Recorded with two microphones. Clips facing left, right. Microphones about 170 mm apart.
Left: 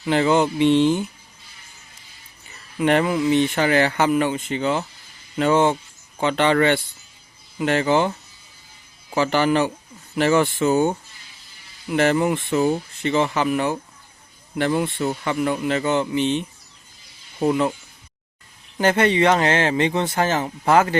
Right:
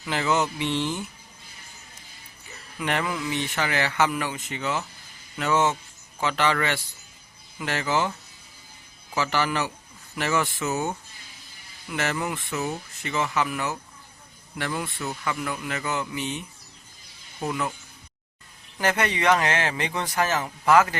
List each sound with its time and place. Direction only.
0.0 s speech: 30° left (ahead or behind)
2.7 s speech: 30° left (ahead or behind)
9.1 s speech: 30° left (ahead or behind)
17.4 s speech: 30° left (ahead or behind)
18.8 s speech: 30° left (ahead or behind)